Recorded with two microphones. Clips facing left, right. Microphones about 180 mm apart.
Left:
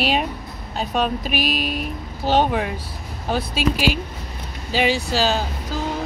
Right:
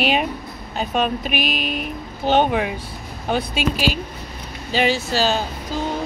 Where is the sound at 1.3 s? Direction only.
55° right (ahead or behind).